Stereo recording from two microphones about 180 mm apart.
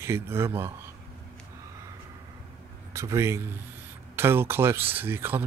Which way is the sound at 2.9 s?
15° right (ahead or behind).